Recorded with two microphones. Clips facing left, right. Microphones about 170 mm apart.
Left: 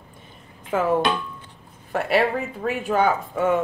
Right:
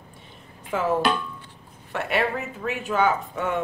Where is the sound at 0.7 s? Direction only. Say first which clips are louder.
Left 2 dB; 50° left (ahead or behind).